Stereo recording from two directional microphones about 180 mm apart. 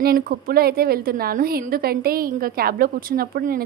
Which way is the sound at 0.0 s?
55° right (ahead or behind).